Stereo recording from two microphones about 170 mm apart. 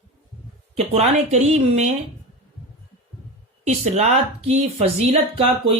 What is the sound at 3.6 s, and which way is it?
Speech, 40° right (ahead or behind).